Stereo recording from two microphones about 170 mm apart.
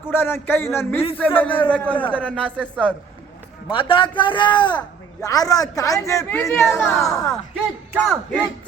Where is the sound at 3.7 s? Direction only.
30° left (ahead or behind); by 7.0 s 15° left (ahead or behind).